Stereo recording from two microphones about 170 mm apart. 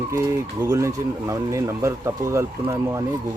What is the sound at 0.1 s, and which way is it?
Speech, 15° right (ahead or behind).